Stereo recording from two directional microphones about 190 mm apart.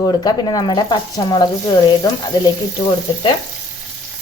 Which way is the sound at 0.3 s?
20° left (ahead or behind).